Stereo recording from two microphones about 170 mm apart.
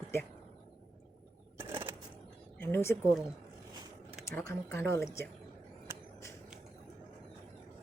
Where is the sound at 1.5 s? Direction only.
30° right (ahead or behind).